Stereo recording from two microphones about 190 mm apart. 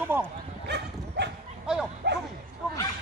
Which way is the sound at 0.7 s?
65° right (ahead or behind).